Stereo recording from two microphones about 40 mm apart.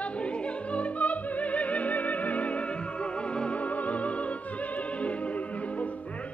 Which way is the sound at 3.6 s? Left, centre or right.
Left.